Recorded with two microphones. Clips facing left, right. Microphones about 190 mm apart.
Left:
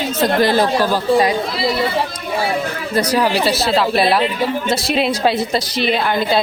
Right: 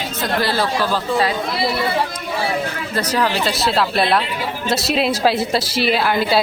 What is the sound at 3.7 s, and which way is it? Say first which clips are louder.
Speech: left 3 dB; centre (ahead or behind).